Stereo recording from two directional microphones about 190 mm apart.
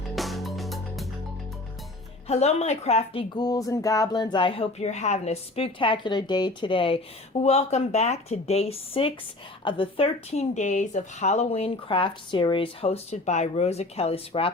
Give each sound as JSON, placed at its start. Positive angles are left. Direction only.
{"t": 0.2, "sound": "music", "side_deg": 0}
{"t": 2.2, "sound": "speech", "side_deg": 35}